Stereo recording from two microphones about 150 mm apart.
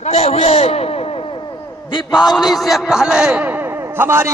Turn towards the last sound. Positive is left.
turn(degrees=-15)  # may be behind; listen again after turning